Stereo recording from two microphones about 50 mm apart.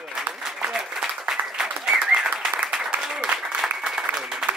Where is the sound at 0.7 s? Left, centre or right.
Centre.